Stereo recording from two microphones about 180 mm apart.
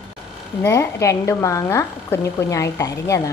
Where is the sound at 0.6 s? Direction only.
15° left (ahead or behind).